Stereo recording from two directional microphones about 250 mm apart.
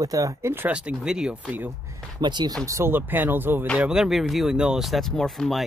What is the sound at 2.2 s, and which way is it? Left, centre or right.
Speech, centre.